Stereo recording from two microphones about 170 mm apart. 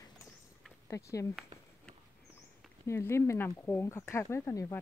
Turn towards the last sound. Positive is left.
turn(degrees=15)  # may be behind; listen again after turning